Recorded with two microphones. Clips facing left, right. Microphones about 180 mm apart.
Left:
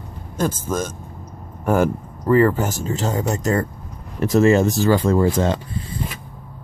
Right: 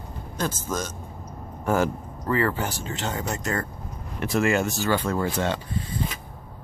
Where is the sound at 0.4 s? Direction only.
50° left (ahead or behind); by 5.6 s 35° left (ahead or behind).